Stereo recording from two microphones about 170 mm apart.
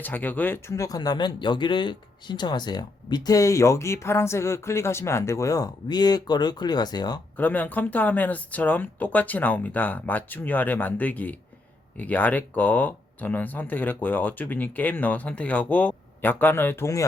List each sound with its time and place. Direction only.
0.0 s speech: 10° left (ahead or behind)
7.3 s speech: 10° left (ahead or behind)